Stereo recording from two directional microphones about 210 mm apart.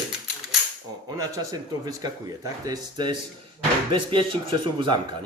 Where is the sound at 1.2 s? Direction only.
15° right (ahead or behind).